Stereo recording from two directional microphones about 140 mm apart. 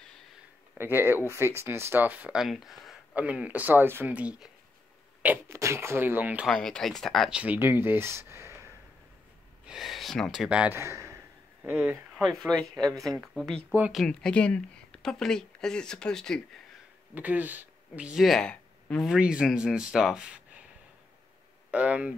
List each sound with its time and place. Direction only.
0.7 s speech: 15° right (ahead or behind)
6.4 s speech: 5° left (ahead or behind); by 8.6 s 20° right (ahead or behind)
9.7 s speech: centre (ahead or behind)
10.5 s speech: 10° right (ahead or behind)
10.8 s a man's voice: 20° right (ahead or behind)
12.2 s speech: centre (ahead or behind)
13.7 s speech: 10° right (ahead or behind)
13.9 s speech: 5° left (ahead or behind)
17.1 s speech: 10° right (ahead or behind); by 19.0 s 5° left (ahead or behind)
19.0 s speech: 5° right (ahead or behind)
21.6 s speech: 10° right (ahead or behind)